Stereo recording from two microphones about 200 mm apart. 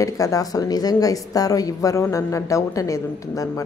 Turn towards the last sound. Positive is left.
turn(degrees=15)  # may be behind; listen again after turning